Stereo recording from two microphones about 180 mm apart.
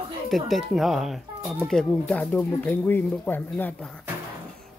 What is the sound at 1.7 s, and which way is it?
Speech, 5° left (ahead or behind).